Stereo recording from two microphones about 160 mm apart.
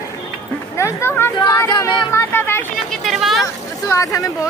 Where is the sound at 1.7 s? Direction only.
30° left (ahead or behind).